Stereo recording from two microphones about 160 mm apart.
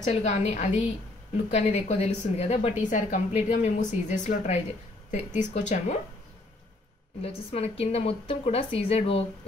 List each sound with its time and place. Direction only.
0.1 s a woman's voice: 45° left (ahead or behind)
7.2 s a woman's voice: 40° left (ahead or behind)